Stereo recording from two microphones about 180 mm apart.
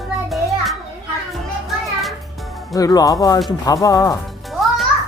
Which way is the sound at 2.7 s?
20° left (ahead or behind).